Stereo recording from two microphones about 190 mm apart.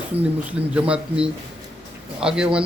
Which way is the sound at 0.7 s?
5° right (ahead or behind).